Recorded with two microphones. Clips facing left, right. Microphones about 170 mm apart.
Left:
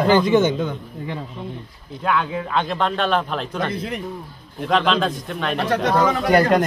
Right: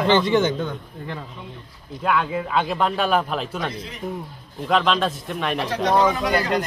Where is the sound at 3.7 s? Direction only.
60° left (ahead or behind).